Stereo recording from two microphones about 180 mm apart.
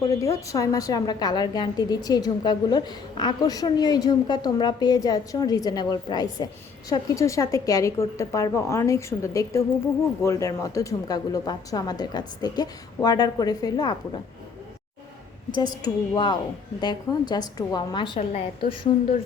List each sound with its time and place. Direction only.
0.2 s a woman's voice: 15° left (ahead or behind)
15.5 s a woman's voice: 20° left (ahead or behind)